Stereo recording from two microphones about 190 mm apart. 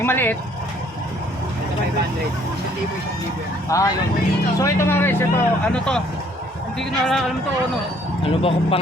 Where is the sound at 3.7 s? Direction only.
15° left (ahead or behind).